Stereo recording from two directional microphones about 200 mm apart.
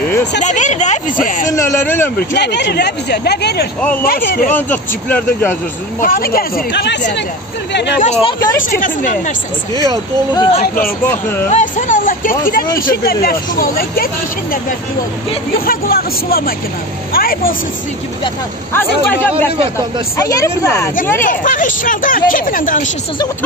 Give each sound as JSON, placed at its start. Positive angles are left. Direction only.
{"t": 0.4, "sound": "speech", "side_deg": 35}
{"t": 1.5, "sound": "speech", "side_deg": 15}
{"t": 2.1, "sound": "speech", "side_deg": 55}
{"t": 4.5, "sound": "speech", "side_deg": 10}
{"t": 5.9, "sound": "speech", "side_deg": 45}
{"t": 8.0, "sound": "speech", "side_deg": 30}
{"t": 8.5, "sound": "speech", "side_deg": 40}
{"t": 11.1, "sound": "speech", "side_deg": 10}
{"t": 11.4, "sound": "speech", "side_deg": 40}
{"t": 15.6, "sound": "speech", "side_deg": 45}
{"t": 18.7, "sound": "speech", "side_deg": 10}
{"t": 21.2, "sound": "speech", "side_deg": 40}